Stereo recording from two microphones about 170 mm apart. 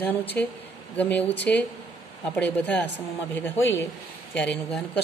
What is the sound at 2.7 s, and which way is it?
Speech, 90° left.